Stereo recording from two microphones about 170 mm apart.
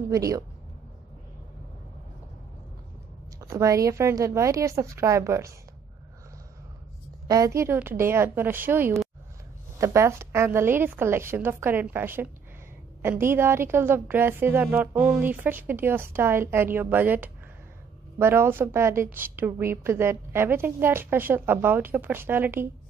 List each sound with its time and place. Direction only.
0.1 s speech: 20° right (ahead or behind)
3.3 s a woman's voice: 15° right (ahead or behind)
7.2 s a woman's voice: 20° right (ahead or behind)